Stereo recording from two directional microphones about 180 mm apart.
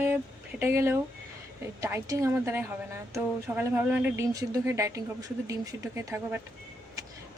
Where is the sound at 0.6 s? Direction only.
15° right (ahead or behind).